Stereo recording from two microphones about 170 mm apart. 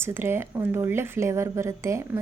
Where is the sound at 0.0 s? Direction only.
15° right (ahead or behind).